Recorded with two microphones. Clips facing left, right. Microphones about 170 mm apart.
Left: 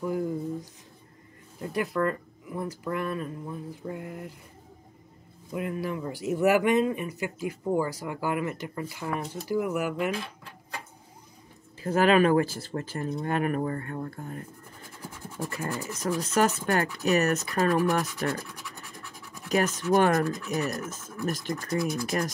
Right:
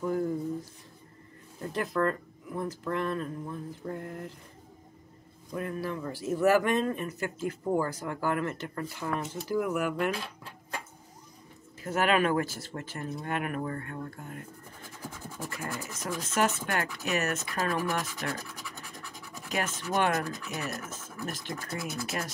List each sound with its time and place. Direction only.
0.0 s a sound: 10° left (ahead or behind)
1.6 s speech: 10° left (ahead or behind)
5.5 s speech: 15° left (ahead or behind)
11.8 s speech: 35° left (ahead or behind)
16.0 s speech: 40° left (ahead or behind)
19.5 s speech: 40° left (ahead or behind)